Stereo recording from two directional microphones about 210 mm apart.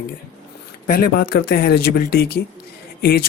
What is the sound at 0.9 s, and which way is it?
Speech, 45° left (ahead or behind).